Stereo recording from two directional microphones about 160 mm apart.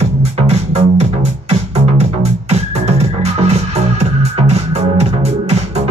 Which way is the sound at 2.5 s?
40° right (ahead or behind).